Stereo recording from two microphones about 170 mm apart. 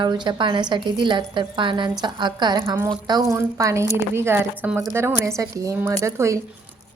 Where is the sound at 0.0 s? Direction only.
25° right (ahead or behind).